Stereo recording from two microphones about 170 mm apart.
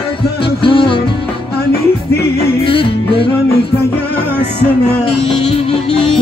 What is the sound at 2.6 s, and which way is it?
Music, 30° left (ahead or behind).